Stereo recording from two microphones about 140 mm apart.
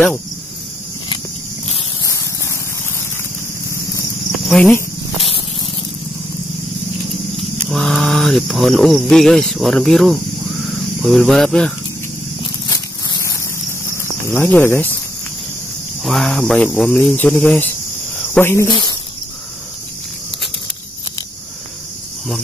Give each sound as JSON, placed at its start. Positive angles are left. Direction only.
{"t": 2.0, "sound": "a sound", "side_deg": 20}
{"t": 4.5, "sound": "speech", "side_deg": 5}
{"t": 7.7, "sound": "speech", "side_deg": 0}
{"t": 12.6, "sound": "a sound", "side_deg": 25}
{"t": 13.9, "sound": "speech", "side_deg": 15}
{"t": 16.0, "sound": "speech", "side_deg": 0}
{"t": 18.7, "sound": "speech", "side_deg": 30}